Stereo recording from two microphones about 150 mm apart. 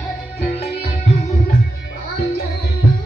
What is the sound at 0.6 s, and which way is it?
Music, 40° left (ahead or behind).